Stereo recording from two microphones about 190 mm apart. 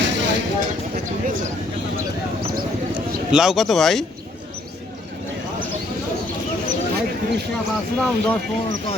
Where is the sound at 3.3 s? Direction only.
Centre (ahead or behind).